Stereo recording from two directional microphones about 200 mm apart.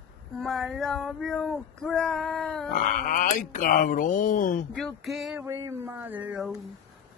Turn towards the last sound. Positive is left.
turn(degrees=0)  # may be behind; listen again after turning